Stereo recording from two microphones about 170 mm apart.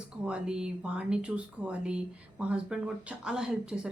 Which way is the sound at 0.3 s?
5° right (ahead or behind).